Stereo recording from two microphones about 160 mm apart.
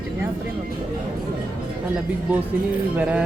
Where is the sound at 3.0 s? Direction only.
10° right (ahead or behind).